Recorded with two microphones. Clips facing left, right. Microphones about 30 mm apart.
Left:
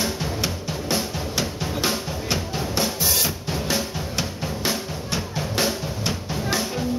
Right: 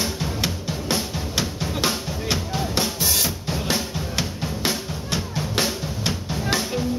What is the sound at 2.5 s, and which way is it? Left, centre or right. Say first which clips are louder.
Drum: even; centre.